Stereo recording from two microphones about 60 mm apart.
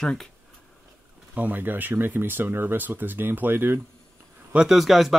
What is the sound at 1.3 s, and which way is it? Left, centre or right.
Speech, right.